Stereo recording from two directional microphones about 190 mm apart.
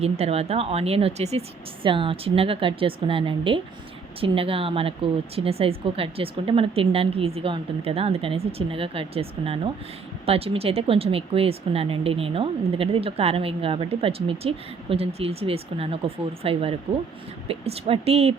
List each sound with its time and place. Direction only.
0.0 s speech: 35° right (ahead or behind)